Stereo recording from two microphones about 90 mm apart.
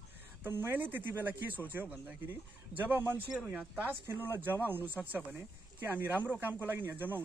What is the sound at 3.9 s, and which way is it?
Speech, 25° right (ahead or behind).